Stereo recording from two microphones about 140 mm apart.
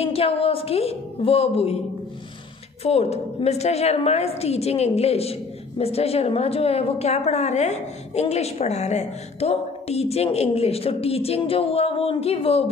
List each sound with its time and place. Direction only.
0.0 s a woman's voice: 45° left (ahead or behind)
2.8 s a woman's voice: 50° left (ahead or behind)